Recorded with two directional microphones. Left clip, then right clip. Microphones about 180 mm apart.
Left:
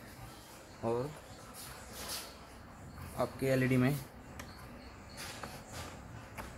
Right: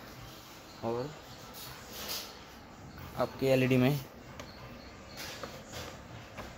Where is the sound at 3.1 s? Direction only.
15° right (ahead or behind).